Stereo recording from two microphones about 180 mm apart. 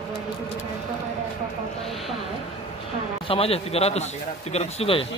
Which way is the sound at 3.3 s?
30° left (ahead or behind).